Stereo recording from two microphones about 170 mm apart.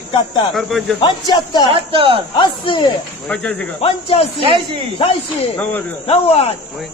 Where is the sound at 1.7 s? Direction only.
30° right (ahead or behind).